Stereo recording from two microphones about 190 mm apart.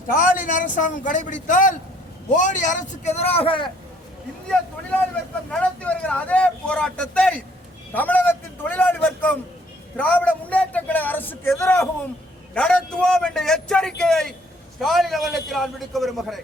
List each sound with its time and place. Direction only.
0.1 s a man's voice: 45° left (ahead or behind); by 3.7 s 30° left (ahead or behind)
5.5 s a man's voice: 5° left (ahead or behind)